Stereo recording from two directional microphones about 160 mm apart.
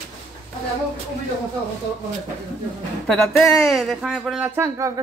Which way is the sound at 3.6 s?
Centre (ahead or behind).